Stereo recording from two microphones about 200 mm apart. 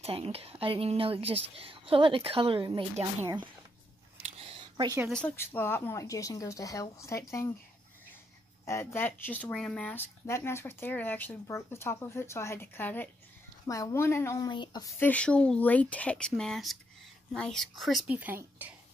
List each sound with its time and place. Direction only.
0.0 s a woman's voice: 30° right (ahead or behind)
3.2 s speech: 10° right (ahead or behind)
4.2 s a sound: 30° right (ahead or behind)
5.1 s speech: 10° left (ahead or behind)
8.6 s speech: 10° left (ahead or behind); by 18.7 s 10° right (ahead or behind)